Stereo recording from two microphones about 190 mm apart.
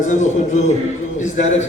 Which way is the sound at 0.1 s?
40° left (ahead or behind).